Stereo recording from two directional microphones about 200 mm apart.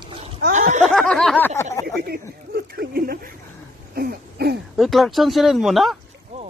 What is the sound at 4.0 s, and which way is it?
Throat clearing, 50° right (ahead or behind).